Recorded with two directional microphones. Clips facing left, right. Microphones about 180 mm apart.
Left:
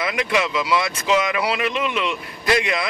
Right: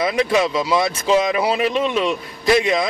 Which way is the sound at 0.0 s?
30° right (ahead or behind).